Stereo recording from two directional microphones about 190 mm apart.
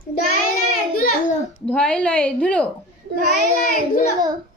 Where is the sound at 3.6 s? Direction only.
50° left (ahead or behind).